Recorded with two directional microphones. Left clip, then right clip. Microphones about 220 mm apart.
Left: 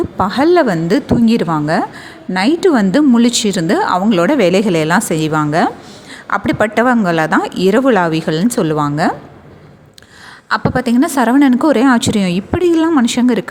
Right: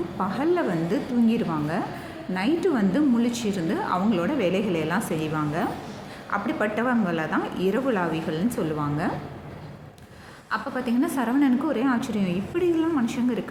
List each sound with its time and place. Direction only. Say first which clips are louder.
0.2 s speech: left 13 dB; 45° left (ahead or behind)
10.5 s speech: left 12 dB; 45° left (ahead or behind)